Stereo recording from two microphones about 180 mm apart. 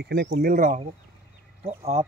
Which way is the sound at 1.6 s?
35° right (ahead or behind).